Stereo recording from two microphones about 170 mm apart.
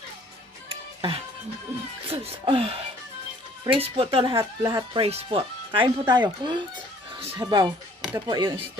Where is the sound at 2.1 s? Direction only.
35° right (ahead or behind).